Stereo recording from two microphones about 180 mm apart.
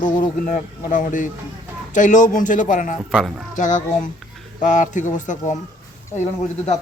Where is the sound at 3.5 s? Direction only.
45° left (ahead or behind).